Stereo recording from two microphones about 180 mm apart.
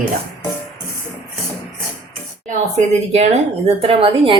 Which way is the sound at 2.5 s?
40° right (ahead or behind).